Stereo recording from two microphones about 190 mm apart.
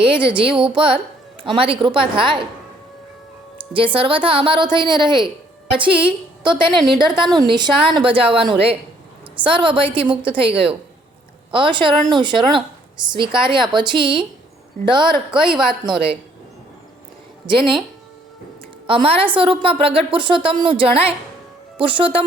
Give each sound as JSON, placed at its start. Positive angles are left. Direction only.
{"t": 0.0, "sound": "a woman's voice", "side_deg": -25}
{"t": 3.9, "sound": "a woman's voice", "side_deg": -30}
{"t": 11.5, "sound": "a woman's voice", "side_deg": -25}
{"t": 17.4, "sound": "speech", "side_deg": -25}
{"t": 18.9, "sound": "a woman's voice", "side_deg": -30}